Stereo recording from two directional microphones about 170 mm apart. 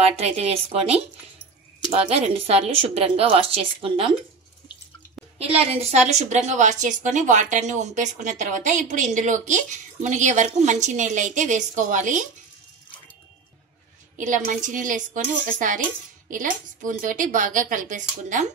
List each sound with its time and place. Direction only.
0.0 s a woman's voice: 40° right (ahead or behind)
5.4 s a woman's voice: 35° right (ahead or behind)
14.2 s a woman's voice: 50° right (ahead or behind)